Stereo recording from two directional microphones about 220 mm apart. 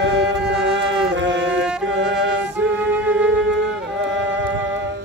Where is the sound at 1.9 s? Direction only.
55° right (ahead or behind).